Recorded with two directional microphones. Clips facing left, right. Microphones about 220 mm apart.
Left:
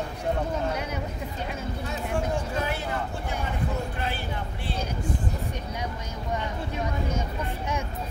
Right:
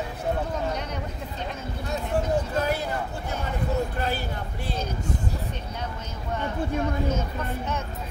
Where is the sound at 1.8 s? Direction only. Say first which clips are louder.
Right 4 dB; 40° right (ahead or behind).